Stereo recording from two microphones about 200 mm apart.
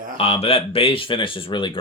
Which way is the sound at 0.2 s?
30° left (ahead or behind).